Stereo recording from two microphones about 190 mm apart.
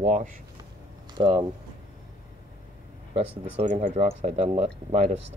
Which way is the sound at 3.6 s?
35° right (ahead or behind).